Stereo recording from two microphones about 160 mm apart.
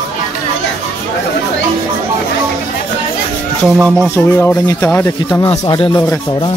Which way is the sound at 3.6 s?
5° right (ahead or behind).